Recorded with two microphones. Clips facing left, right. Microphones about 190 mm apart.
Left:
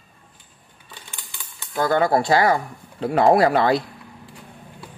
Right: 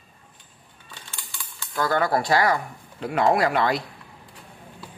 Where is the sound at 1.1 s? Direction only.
20° left (ahead or behind).